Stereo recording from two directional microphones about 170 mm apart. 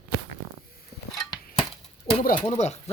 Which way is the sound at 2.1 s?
25° left (ahead or behind).